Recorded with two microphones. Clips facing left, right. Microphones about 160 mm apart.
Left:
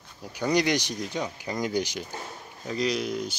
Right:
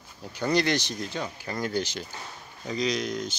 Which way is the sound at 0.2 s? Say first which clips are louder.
Left 1 dB; 10° left (ahead or behind).